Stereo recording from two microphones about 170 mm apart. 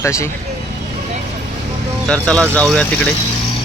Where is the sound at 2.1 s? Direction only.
5° left (ahead or behind).